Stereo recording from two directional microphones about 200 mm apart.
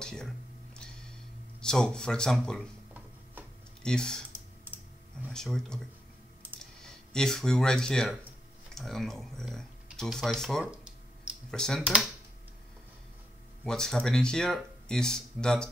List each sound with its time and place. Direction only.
0.0 s a sound: 5° left (ahead or behind)
1.6 s speech: 5° left (ahead or behind)
3.8 s speech: 5° left (ahead or behind)
5.3 s speech: 5° left (ahead or behind)
13.7 s speech: 5° left (ahead or behind)